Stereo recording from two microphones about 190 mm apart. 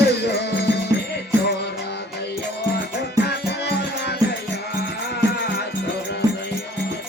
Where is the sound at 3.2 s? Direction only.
60° left (ahead or behind).